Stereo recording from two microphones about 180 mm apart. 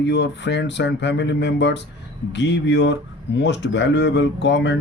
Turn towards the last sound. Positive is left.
turn(degrees=80)